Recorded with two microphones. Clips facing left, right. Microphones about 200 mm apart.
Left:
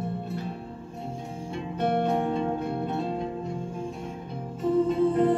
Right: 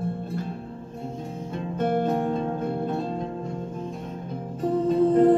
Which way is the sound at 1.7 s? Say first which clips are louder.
Right 1 dB; 45° right (ahead or behind).